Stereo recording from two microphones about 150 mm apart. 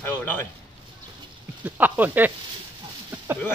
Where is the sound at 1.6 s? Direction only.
10° right (ahead or behind).